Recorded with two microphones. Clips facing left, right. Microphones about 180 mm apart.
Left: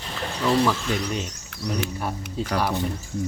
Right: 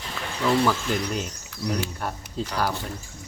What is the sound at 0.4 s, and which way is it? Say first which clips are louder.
Speech: even; centre (ahead or behind).